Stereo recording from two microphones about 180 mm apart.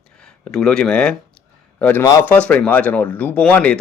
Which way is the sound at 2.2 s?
5° left (ahead or behind).